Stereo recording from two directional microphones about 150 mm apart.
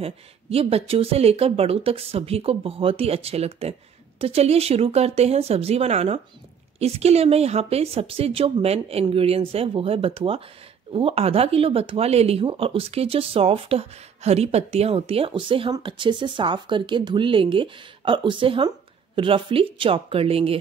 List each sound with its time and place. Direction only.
0.0 s a woman's voice: 40° right (ahead or behind)